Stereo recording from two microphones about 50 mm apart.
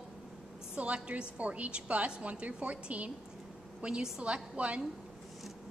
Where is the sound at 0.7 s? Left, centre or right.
Right.